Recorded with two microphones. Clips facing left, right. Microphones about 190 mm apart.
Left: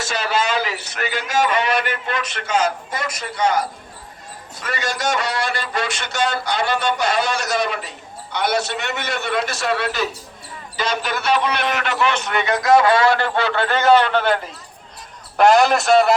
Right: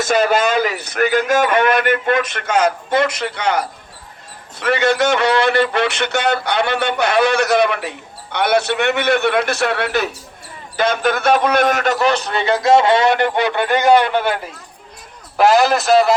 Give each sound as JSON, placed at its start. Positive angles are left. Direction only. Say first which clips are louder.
{"t": 0.0, "sound": "a man's voice", "louder": "right 7 dB", "side_deg": -50}
{"t": 4.6, "sound": "a man's voice", "louder": "right 9 dB", "side_deg": -60}